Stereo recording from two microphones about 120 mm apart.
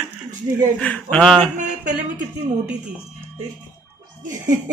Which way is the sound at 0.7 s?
10° left (ahead or behind).